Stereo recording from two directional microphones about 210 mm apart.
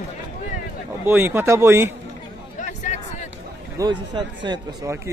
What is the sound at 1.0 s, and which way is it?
Speech, 10° right (ahead or behind).